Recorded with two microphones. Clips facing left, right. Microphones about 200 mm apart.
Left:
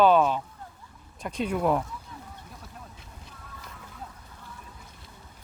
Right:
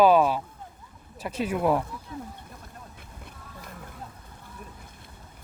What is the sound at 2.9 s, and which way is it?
Music, 55° right (ahead or behind).